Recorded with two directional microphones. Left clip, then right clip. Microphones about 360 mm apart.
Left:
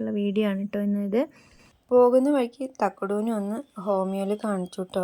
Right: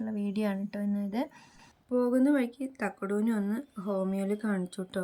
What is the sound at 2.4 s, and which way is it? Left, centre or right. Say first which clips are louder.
Speech: left 8 dB; centre.